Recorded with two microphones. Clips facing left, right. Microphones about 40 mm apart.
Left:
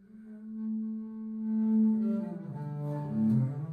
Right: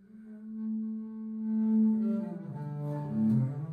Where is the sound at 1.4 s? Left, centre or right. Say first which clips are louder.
Even; centre.